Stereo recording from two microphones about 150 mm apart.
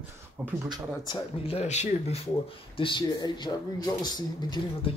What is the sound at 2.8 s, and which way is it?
Speech, 30° left (ahead or behind).